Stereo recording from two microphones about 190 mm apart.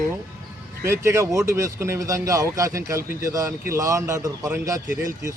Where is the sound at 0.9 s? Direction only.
15° right (ahead or behind).